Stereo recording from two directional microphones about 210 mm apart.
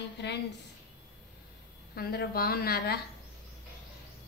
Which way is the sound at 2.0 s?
45° left (ahead or behind).